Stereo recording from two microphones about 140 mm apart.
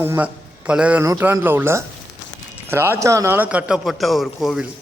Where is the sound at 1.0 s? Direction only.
20° right (ahead or behind); by 4.6 s 5° right (ahead or behind).